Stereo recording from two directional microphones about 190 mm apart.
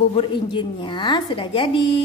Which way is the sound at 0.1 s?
25° left (ahead or behind).